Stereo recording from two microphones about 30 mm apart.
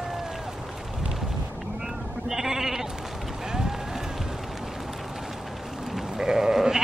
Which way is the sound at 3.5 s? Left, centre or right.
Centre.